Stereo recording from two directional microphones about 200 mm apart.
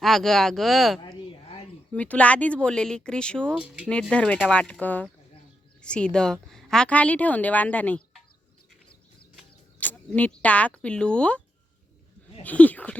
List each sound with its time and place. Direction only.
0.0 s speech: centre (ahead or behind)
1.0 s a sound: 25° left (ahead or behind)
1.9 s speech: 5° left (ahead or behind)
9.8 s speech: 10° left (ahead or behind)